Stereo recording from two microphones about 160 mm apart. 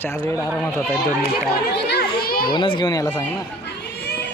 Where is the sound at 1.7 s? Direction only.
90° left.